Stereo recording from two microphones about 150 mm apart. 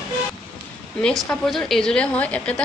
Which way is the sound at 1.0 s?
5° left (ahead or behind).